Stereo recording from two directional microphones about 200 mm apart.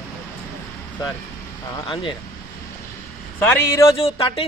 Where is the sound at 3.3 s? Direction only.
10° left (ahead or behind).